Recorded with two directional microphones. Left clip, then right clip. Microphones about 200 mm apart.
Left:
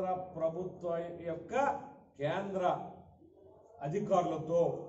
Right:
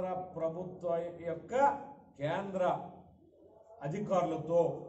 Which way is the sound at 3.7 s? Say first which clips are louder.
Left 1 dB; 10° right (ahead or behind).